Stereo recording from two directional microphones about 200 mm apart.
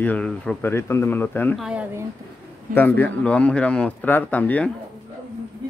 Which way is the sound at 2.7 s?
10° left (ahead or behind).